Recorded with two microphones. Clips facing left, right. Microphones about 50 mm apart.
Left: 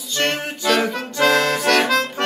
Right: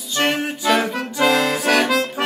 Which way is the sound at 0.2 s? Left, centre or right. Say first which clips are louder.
Right 2 dB; centre.